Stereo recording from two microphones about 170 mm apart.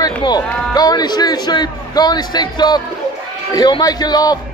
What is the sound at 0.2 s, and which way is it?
A man's voice, 25° left (ahead or behind).